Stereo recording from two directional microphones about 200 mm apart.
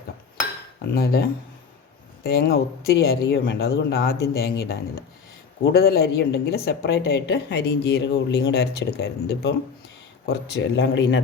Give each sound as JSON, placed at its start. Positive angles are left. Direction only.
{"t": 0.9, "sound": "speech", "side_deg": 50}
{"t": 2.2, "sound": "a woman's voice", "side_deg": 50}